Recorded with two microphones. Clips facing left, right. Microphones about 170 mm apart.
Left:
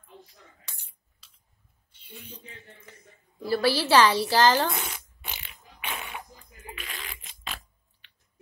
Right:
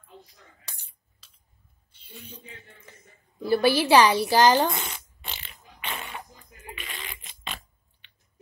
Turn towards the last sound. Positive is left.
turn(degrees=0)  # may be behind; listen again after turning